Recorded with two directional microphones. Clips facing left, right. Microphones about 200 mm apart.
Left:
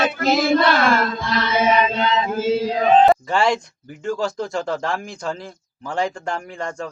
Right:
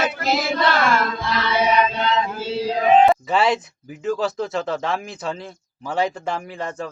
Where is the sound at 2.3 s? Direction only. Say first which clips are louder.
Left 4 dB; 45° left (ahead or behind).